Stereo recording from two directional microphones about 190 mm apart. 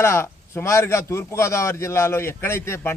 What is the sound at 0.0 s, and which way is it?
A man's voice, 15° left (ahead or behind).